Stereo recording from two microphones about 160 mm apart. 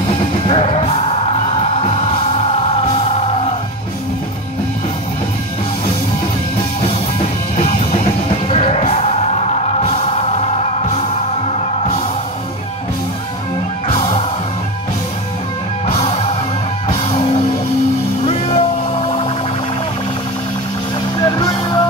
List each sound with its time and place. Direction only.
0.5 s music: 40° left (ahead or behind)
8.5 s music: 40° left (ahead or behind)
13.8 s music: 35° left (ahead or behind)
15.9 s music: 40° left (ahead or behind)
21.3 s music: 25° left (ahead or behind)